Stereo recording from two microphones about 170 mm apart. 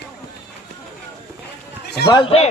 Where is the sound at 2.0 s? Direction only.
25° left (ahead or behind).